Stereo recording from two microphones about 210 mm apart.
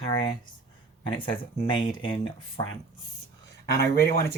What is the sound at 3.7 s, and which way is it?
Speech, 15° left (ahead or behind).